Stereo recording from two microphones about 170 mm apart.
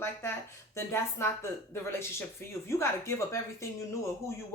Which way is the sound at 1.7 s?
15° left (ahead or behind).